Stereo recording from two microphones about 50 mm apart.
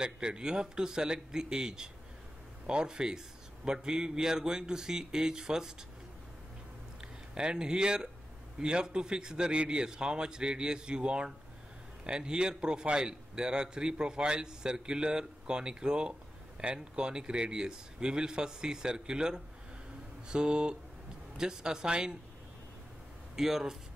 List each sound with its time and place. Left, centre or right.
0.0 s a man's voice: centre
7.0 s a man's voice: centre
23.3 s a man's voice: centre